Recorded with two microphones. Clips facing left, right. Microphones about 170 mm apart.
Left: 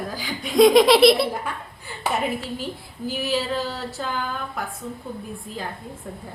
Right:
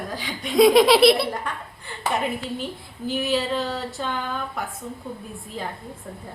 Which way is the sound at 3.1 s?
Centre (ahead or behind).